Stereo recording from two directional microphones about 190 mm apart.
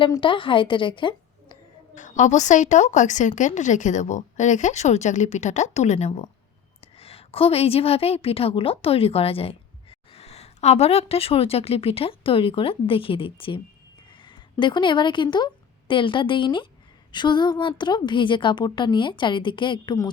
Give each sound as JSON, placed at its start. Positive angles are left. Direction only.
{"t": 0.0, "sound": "a woman's voice", "side_deg": 25}
{"t": 2.0, "sound": "a woman's voice", "side_deg": 40}